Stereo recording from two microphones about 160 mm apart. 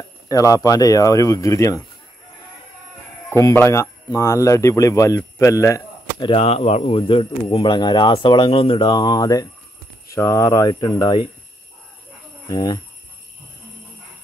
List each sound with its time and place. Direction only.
0.3 s a man's voice: 20° left (ahead or behind)
3.3 s a man's voice: 15° left (ahead or behind)
12.4 s speech: 20° left (ahead or behind)